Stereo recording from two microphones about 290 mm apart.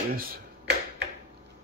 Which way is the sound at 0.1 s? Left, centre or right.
Right.